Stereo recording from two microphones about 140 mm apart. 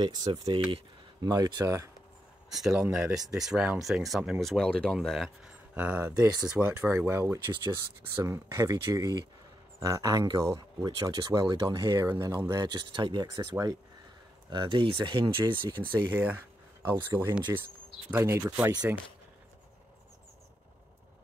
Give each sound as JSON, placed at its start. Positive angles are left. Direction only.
{"t": 0.0, "sound": "speech", "side_deg": -30}
{"t": 1.2, "sound": "speech", "side_deg": -25}
{"t": 2.9, "sound": "speech", "side_deg": -5}
{"t": 5.8, "sound": "speech", "side_deg": -10}
{"t": 12.6, "sound": "speech", "side_deg": -30}
{"t": 15.9, "sound": "speech", "side_deg": -15}